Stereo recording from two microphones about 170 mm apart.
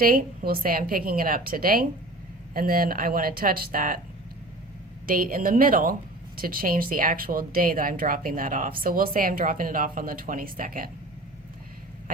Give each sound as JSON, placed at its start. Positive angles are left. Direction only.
{"t": 0.0, "sound": "a woman's voice", "side_deg": -55}
{"t": 5.0, "sound": "a woman's voice", "side_deg": -55}